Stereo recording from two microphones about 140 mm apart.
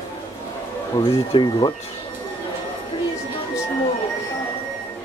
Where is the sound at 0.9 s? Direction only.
35° left (ahead or behind).